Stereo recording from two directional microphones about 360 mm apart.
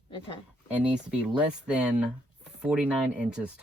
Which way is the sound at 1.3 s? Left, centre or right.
Centre.